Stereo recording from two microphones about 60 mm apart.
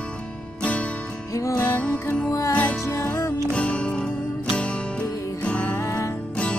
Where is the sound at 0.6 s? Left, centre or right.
Centre.